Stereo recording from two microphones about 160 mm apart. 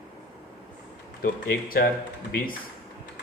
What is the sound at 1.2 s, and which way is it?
A man's voice, 70° left (ahead or behind).